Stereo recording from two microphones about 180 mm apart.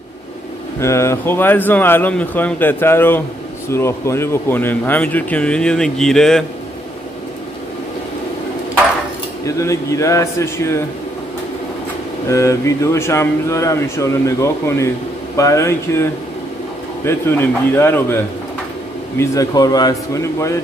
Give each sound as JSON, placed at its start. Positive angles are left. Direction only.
{"t": 0.7, "sound": "speech", "side_deg": 15}
{"t": 9.6, "sound": "speech", "side_deg": 15}
{"t": 12.3, "sound": "speech", "side_deg": 15}